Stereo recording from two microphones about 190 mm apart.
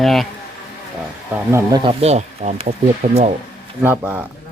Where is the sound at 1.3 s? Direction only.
15° right (ahead or behind).